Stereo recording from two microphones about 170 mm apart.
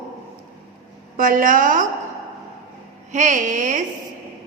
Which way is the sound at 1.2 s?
55° right (ahead or behind).